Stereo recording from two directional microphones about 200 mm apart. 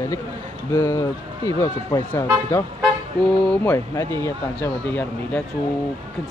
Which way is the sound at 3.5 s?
10° left (ahead or behind).